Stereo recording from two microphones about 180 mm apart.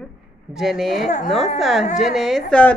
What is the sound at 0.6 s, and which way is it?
A woman's voice, centre (ahead or behind).